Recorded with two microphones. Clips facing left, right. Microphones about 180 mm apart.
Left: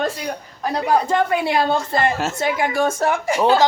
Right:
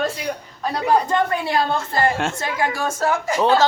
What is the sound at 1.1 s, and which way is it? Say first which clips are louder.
Speech: left 2 dB; 15° left (ahead or behind).